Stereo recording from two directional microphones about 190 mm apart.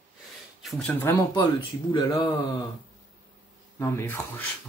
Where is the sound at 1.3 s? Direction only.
25° left (ahead or behind).